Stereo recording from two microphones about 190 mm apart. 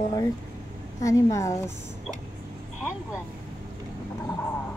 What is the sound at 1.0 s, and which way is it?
Speech, 15° left (ahead or behind).